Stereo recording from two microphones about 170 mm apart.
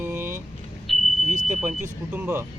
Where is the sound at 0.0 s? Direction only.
10° right (ahead or behind).